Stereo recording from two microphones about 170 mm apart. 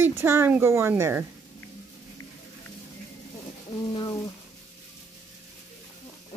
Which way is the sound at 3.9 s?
25° left (ahead or behind).